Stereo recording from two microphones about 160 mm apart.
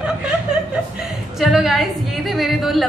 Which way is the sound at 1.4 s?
Centre (ahead or behind).